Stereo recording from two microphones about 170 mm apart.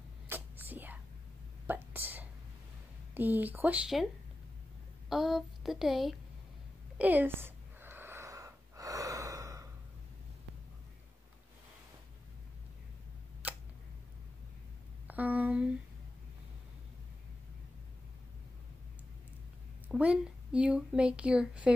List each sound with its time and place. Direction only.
0.3 s whispering: 10° right (ahead or behind)
3.2 s speech: 10° right (ahead or behind)
5.1 s a sound: centre (ahead or behind)
7.0 s gasp: 10° right (ahead or behind)
13.4 s tick: 10° right (ahead or behind)
15.0 s a sound: 10° right (ahead or behind)
19.9 s speech: 5° right (ahead or behind)